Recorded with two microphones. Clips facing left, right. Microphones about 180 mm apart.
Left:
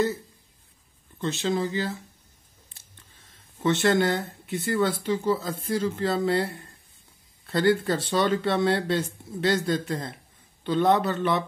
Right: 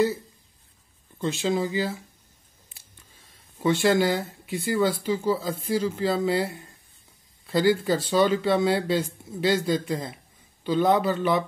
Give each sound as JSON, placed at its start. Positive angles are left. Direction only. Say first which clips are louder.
{"t": 1.1, "sound": "speech", "louder": "right 1 dB", "side_deg": -15}
{"t": 3.8, "sound": "speech", "louder": "right 1 dB", "side_deg": -5}